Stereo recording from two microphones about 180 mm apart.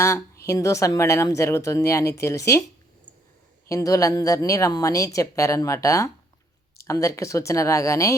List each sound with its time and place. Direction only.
0.0 s speech: 15° left (ahead or behind)
3.7 s speech: 15° left (ahead or behind)